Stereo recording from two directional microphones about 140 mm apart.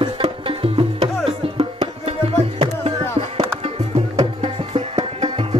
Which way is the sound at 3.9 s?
40° right (ahead or behind).